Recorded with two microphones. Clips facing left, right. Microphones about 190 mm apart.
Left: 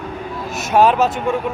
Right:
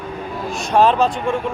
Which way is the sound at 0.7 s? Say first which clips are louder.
Left 1 dB; 5° left (ahead or behind).